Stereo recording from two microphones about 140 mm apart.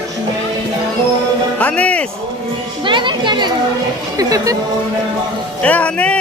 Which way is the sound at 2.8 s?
35° right (ahead or behind).